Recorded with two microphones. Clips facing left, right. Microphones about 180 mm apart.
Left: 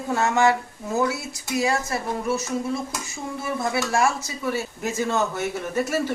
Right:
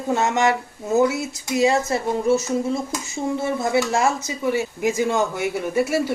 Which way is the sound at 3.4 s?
20° right (ahead or behind).